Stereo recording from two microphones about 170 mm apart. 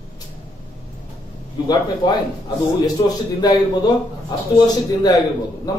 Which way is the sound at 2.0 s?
25° left (ahead or behind).